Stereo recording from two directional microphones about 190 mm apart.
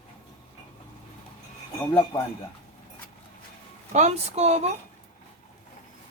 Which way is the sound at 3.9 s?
35° right (ahead or behind).